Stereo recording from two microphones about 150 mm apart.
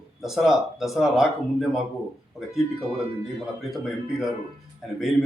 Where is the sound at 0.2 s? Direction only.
Centre (ahead or behind).